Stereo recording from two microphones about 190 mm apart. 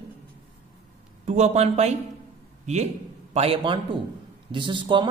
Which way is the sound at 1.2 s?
35° right (ahead or behind).